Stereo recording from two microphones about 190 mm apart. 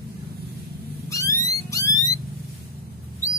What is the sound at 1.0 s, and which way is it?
Cat, 15° left (ahead or behind).